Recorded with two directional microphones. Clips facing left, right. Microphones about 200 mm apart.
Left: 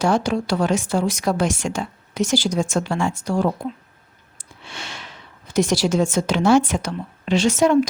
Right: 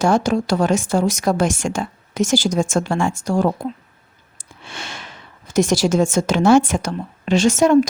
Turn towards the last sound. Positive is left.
turn(degrees=-45)  # may be behind; listen again after turning